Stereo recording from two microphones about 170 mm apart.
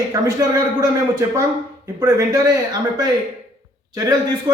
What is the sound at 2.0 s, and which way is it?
A man's voice, 15° right (ahead or behind).